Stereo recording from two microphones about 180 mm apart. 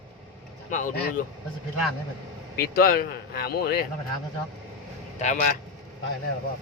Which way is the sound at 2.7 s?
55° left (ahead or behind).